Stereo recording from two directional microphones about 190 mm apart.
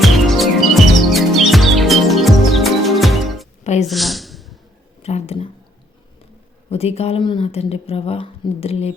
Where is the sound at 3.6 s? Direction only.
35° left (ahead or behind).